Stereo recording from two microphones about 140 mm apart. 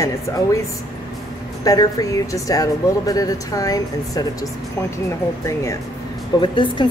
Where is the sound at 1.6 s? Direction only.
25° left (ahead or behind).